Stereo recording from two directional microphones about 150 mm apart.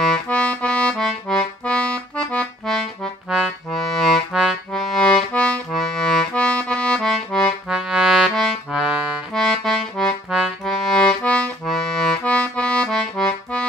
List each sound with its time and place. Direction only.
0.0 s accordion: 5° left (ahead or behind)
7.3 s music: centre (ahead or behind)
9.3 s accordion: 5° left (ahead or behind)